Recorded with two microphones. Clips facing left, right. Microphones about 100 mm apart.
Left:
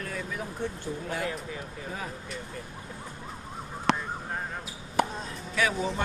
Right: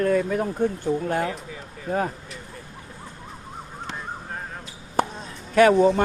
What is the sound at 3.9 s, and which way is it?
Emergency vehicle, 75° left (ahead or behind).